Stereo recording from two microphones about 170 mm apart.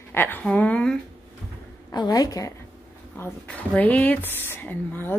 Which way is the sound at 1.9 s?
25° left (ahead or behind).